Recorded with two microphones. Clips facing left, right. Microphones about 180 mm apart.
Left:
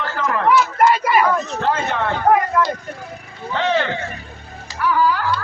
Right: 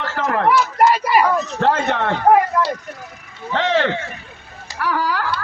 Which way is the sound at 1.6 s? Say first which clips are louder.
Right 4 dB; 70° right (ahead or behind).